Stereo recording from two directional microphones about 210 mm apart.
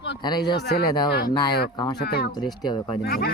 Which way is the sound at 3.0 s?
45° left (ahead or behind).